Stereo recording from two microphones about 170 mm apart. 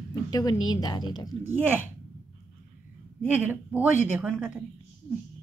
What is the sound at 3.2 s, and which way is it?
A woman's voice, 10° right (ahead or behind).